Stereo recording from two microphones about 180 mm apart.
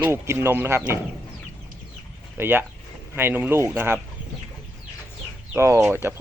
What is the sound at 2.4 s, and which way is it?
Speech, 10° right (ahead or behind).